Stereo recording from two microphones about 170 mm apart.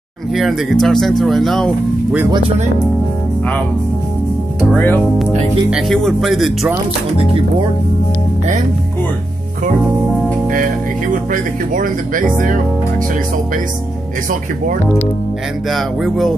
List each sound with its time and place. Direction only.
0.3 s speech: centre (ahead or behind)
4.7 s speech: 10° left (ahead or behind)
5.7 s speech: centre (ahead or behind)
11.3 s speech: 55° right (ahead or behind)
15.7 s speech: centre (ahead or behind)